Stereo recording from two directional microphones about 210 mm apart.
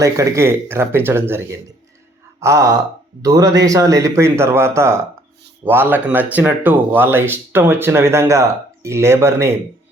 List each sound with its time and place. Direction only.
0.0 s speech: 15° right (ahead or behind)